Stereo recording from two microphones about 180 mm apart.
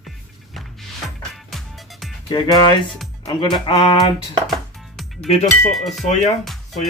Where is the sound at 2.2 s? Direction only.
25° left (ahead or behind).